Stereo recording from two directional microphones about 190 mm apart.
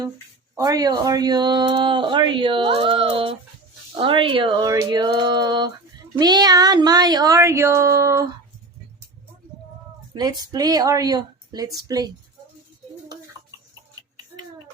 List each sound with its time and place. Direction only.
0.5 s speech: 20° right (ahead or behind)
10.2 s speech: 20° right (ahead or behind)